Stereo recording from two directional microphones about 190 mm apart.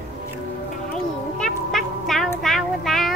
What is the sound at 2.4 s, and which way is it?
Child singing, centre (ahead or behind).